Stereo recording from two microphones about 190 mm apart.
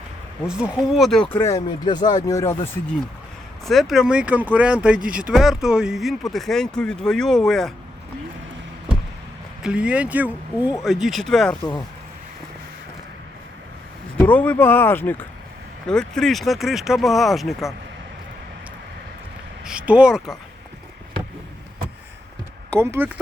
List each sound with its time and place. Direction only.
0.4 s speech: centre (ahead or behind); by 2.6 s 15° left (ahead or behind)
3.7 s speech: centre (ahead or behind)
9.6 s speech: 5° right (ahead or behind)
14.2 s speech: 10° left (ahead or behind)
19.6 s speech: 5° right (ahead or behind)
22.7 s speech: 10° right (ahead or behind)